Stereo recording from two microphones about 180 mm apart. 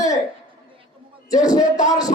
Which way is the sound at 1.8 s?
20° left (ahead or behind).